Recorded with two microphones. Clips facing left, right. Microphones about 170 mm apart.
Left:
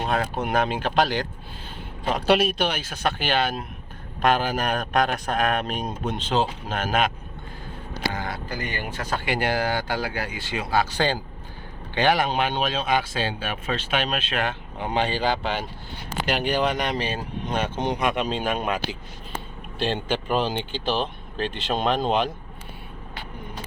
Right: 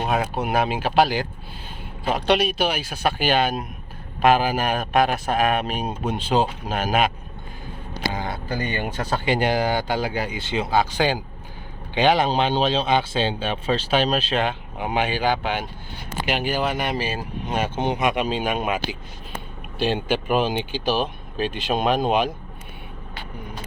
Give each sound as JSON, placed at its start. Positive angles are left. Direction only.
{"t": 0.0, "sound": "a man's voice", "side_deg": -10}
{"t": 8.1, "sound": "a sound", "side_deg": -20}
{"t": 8.5, "sound": "speech", "side_deg": -30}
{"t": 14.4, "sound": "a man's voice", "side_deg": -10}